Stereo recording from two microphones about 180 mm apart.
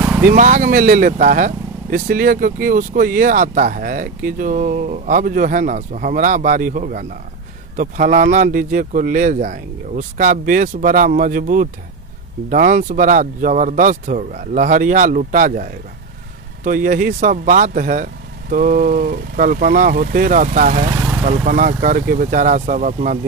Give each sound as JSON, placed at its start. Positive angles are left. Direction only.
{"t": 0.0, "sound": "vehicle", "side_deg": -10}
{"t": 0.3, "sound": "speech", "side_deg": -45}
{"t": 20.9, "sound": "vehicle", "side_deg": -5}
{"t": 21.3, "sound": "speech", "side_deg": -45}